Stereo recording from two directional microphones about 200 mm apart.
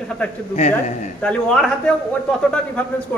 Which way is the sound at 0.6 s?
35° left (ahead or behind).